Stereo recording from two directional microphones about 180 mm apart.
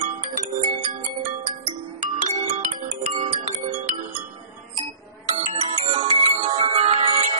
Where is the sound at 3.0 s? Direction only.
40° right (ahead or behind).